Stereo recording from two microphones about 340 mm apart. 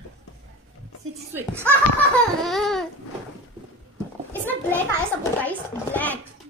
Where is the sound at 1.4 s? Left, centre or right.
Centre.